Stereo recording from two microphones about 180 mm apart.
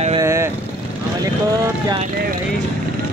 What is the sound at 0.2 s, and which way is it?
Vehicle, 15° right (ahead or behind).